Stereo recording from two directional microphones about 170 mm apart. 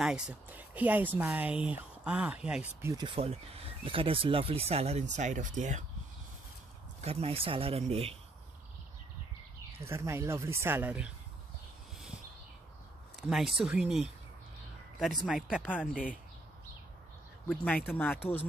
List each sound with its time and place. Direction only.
0.0 s speech: 5° right (ahead or behind)
3.1 s speech: 35° right (ahead or behind)
7.0 s speech: 35° right (ahead or behind)
9.8 s speech: 15° right (ahead or behind)
13.1 s speech: centre (ahead or behind)
15.0 s speech: centre (ahead or behind)
17.5 s speech: 10° left (ahead or behind)